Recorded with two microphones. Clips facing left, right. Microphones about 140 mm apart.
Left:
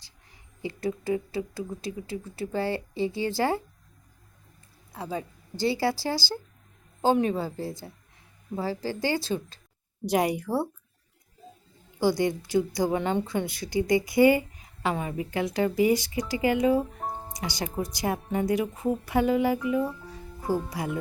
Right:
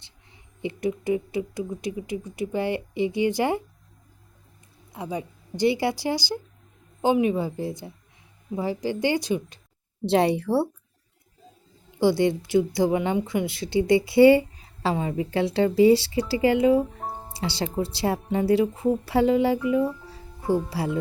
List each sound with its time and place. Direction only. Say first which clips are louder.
0.6 s speech: right 3 dB; 20° right (ahead or behind)
4.9 s a woman's voice: right 2 dB; 20° right (ahead or behind)
10.1 s speech: right 4 dB; 30° right (ahead or behind)
11.9 s speech: right 4 dB; 25° right (ahead or behind)
17.1 s music: even; 5° right (ahead or behind)
17.3 s speech: right 6 dB; 30° right (ahead or behind)
19.8 s speech: right 4 dB; centre (ahead or behind)
20.1 s music: right 4 dB; 30° right (ahead or behind)
20.7 s speech: right 4 dB; 30° right (ahead or behind)